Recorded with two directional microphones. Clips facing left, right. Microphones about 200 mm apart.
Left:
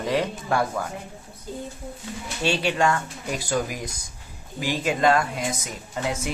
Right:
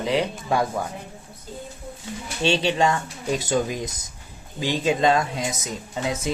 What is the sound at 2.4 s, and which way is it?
Speech, 25° right (ahead or behind).